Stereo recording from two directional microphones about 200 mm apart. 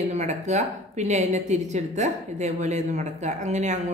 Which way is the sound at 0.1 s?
35° right (ahead or behind).